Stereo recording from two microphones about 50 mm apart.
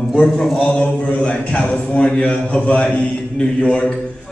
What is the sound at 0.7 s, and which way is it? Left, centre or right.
A man's voice, left.